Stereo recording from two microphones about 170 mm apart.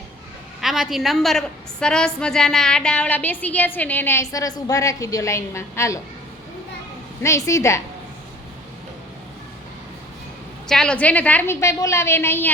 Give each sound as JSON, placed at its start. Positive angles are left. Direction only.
{"t": 0.6, "sound": "a woman's voice", "side_deg": 0}
{"t": 7.2, "sound": "a woman's voice", "side_deg": 15}
{"t": 10.7, "sound": "a woman's voice", "side_deg": 5}